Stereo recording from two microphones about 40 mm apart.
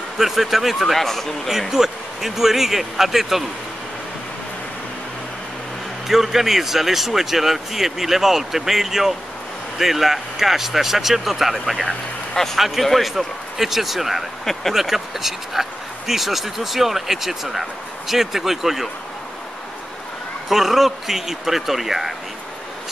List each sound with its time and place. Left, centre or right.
0.2 s speech: centre
0.9 s speech: centre
1.5 s speech: centre
6.0 s speech: centre
14.4 s speech: centre
14.7 s speech: centre
20.4 s speech: centre